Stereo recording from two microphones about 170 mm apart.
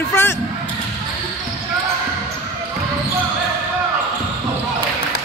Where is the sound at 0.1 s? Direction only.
15° left (ahead or behind).